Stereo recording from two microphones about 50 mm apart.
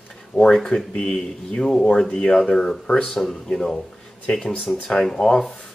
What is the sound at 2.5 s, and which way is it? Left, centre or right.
Speech, centre.